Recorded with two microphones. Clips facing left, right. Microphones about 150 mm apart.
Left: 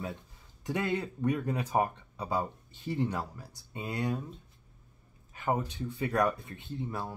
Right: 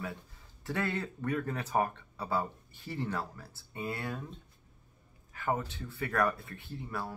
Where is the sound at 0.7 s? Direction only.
15° left (ahead or behind).